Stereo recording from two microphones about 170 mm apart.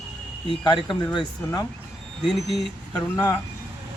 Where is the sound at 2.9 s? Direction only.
20° left (ahead or behind).